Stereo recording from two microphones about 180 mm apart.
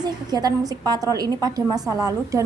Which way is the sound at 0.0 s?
20° right (ahead or behind).